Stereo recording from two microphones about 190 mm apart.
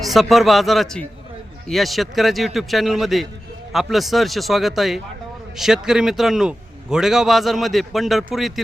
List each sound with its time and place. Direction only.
0.0 s a man's voice: centre (ahead or behind)